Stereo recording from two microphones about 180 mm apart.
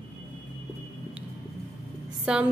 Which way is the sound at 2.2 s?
5° right (ahead or behind).